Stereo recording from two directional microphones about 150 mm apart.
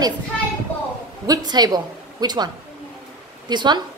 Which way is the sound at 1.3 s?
25° right (ahead or behind).